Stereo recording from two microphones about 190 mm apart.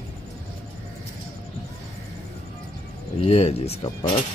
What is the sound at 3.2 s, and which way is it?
Speech, 35° left (ahead or behind).